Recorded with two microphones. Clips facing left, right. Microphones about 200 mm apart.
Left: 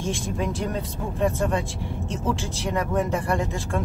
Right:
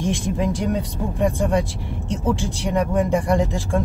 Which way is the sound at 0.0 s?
15° right (ahead or behind).